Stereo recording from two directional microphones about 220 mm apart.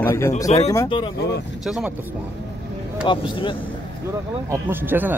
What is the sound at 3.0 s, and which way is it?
Speech, 20° left (ahead or behind).